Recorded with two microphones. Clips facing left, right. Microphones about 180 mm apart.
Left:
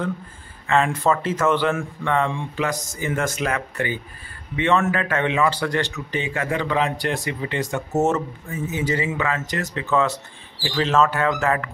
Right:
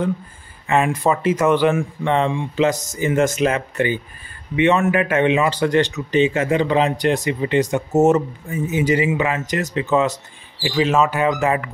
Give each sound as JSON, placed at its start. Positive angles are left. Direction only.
{"t": 0.7, "sound": "speech", "side_deg": -15}